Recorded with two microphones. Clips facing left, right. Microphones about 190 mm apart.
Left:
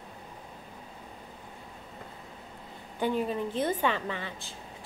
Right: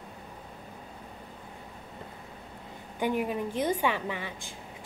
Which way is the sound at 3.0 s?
15° right (ahead or behind).